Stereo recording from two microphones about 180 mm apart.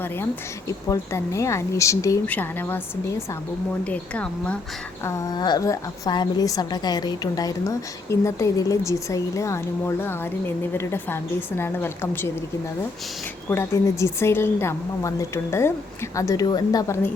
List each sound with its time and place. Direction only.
0.7 s a woman's voice: 15° left (ahead or behind)
3.8 s a woman's voice: 5° left (ahead or behind)
5.0 s a woman's voice: 20° left (ahead or behind)
13.5 s a woman's voice: 15° left (ahead or behind)